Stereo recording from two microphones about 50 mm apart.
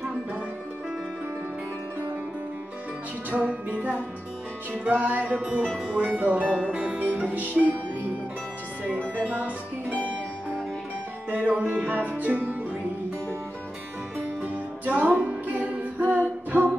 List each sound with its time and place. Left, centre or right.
3.3 s music: right
5.4 s speech: right
6.5 s speech: centre
7.2 s music: right
9.0 s music: left
11.2 s music: right
14.1 s music: right